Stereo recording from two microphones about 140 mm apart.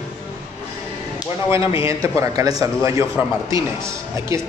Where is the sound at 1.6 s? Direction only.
40° left (ahead or behind).